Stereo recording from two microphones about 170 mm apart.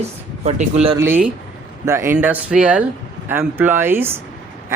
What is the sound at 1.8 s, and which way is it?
A man's voice, 15° right (ahead or behind).